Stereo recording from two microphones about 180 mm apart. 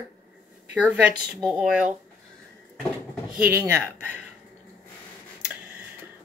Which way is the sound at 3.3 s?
10° right (ahead or behind).